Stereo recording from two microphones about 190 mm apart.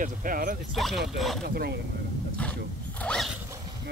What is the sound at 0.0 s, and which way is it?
Speech, 45° right (ahead or behind).